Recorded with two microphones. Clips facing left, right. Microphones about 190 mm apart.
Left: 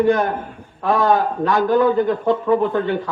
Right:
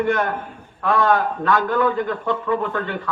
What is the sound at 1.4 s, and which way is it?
A man's voice, 20° left (ahead or behind).